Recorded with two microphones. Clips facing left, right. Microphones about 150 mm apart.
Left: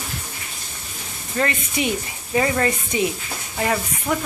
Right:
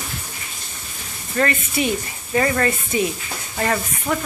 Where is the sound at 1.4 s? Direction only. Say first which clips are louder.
Right 2 dB; 20° left (ahead or behind).